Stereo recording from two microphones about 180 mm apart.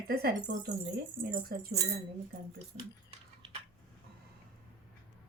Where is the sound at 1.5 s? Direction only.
55° right (ahead or behind).